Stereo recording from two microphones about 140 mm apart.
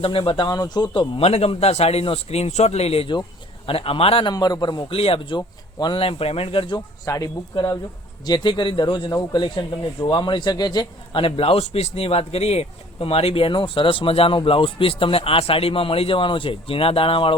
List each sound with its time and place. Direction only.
0.0 s speech: 40° left (ahead or behind)
4.3 s speech: 30° left (ahead or behind)
4.9 s speech: 45° left (ahead or behind)
7.0 s speech: 25° left (ahead or behind)